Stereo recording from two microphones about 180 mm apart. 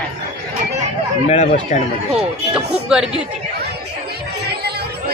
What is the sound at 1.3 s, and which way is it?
Speech, 40° left (ahead or behind).